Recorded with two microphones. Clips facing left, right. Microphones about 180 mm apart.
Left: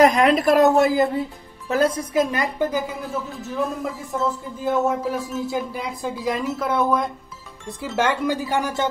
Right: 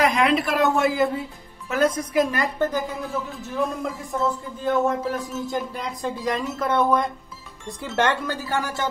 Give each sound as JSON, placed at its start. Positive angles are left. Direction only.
{"t": 0.0, "sound": "a woman's voice", "side_deg": 45}
{"t": 2.3, "sound": "speech", "side_deg": 15}